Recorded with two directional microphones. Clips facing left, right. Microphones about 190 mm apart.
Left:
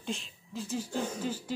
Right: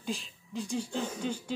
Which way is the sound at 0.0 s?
Centre (ahead or behind).